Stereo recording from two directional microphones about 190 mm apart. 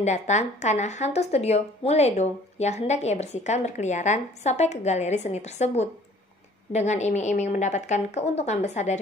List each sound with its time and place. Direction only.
0.0 s a woman's voice: 40° left (ahead or behind)